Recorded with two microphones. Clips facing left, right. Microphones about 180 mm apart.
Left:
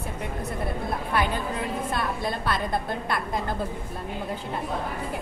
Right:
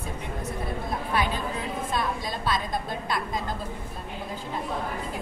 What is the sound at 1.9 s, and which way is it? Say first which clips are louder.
A woman's voice: left 1 dB; 60° left (ahead or behind).